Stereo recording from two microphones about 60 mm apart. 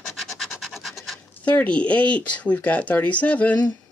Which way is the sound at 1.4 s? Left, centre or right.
Left.